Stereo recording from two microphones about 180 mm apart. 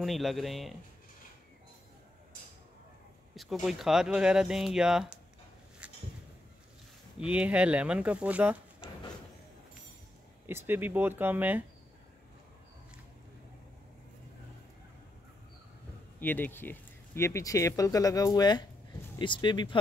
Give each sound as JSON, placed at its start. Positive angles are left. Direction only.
{"t": 0.0, "sound": "speech", "side_deg": 0}
{"t": 3.6, "sound": "speech", "side_deg": 0}
{"t": 5.8, "sound": "a sound", "side_deg": -5}
{"t": 7.2, "sound": "speech", "side_deg": -5}
{"t": 10.4, "sound": "speech", "side_deg": -10}
{"t": 16.2, "sound": "speech", "side_deg": 10}